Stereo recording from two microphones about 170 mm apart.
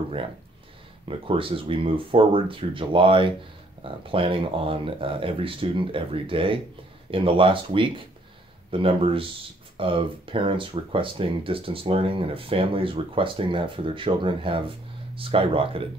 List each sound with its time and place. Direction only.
1.0 s speech: 30° right (ahead or behind)